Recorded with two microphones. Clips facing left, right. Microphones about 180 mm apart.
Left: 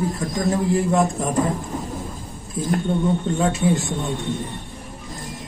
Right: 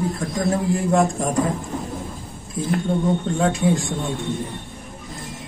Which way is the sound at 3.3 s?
Centre (ahead or behind).